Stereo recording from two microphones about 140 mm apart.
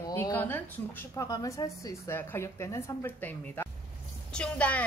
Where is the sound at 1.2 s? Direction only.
25° left (ahead or behind).